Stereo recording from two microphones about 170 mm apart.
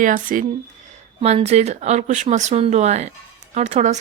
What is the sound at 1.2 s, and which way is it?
Speech, 40° right (ahead or behind).